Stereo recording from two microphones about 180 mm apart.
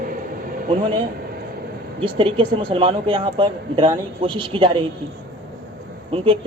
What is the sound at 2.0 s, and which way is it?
A woman's voice, 30° right (ahead or behind).